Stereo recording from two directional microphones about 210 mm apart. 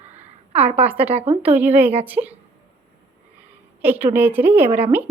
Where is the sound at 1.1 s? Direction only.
30° right (ahead or behind).